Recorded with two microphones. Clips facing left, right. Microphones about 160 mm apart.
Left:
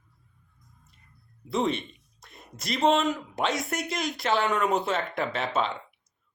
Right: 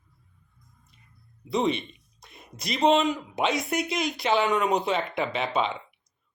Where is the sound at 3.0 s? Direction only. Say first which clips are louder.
Right 2 dB; centre (ahead or behind).